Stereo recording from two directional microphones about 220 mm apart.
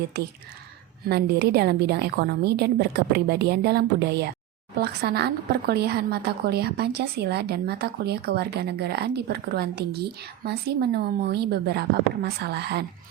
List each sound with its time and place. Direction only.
1.0 s a woman's voice: 45° right (ahead or behind)